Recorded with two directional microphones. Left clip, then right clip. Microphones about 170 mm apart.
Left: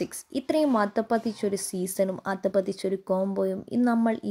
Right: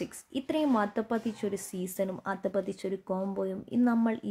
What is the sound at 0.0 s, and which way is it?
A woman's voice, 20° left (ahead or behind).